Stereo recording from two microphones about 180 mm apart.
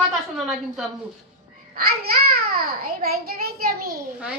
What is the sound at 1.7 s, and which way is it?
A child's voice, 55° right (ahead or behind).